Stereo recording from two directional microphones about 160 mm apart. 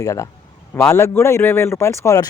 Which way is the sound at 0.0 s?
20° left (ahead or behind).